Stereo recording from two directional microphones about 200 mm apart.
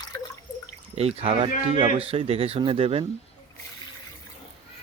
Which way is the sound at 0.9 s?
30° right (ahead or behind).